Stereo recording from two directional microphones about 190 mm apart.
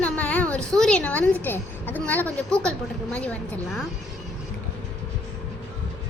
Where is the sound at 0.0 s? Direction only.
10° left (ahead or behind).